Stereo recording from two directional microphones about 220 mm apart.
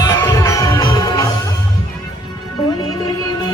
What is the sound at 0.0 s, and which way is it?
Music, 15° left (ahead or behind).